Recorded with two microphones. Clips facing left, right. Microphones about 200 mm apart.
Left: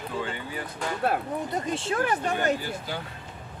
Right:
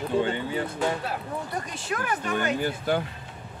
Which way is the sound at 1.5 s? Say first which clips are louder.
Left 3 dB; 25° left (ahead or behind).